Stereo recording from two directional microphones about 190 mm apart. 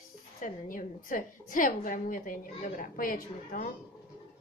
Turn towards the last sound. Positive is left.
turn(degrees=45)  # may be behind; listen again after turning